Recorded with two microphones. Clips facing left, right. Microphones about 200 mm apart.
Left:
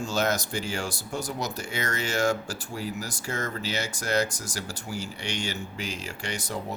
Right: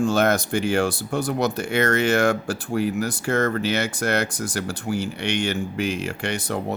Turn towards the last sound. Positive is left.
turn(degrees=-60)  # may be behind; listen again after turning